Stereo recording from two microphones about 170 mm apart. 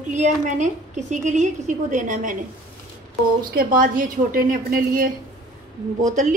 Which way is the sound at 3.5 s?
55° right (ahead or behind).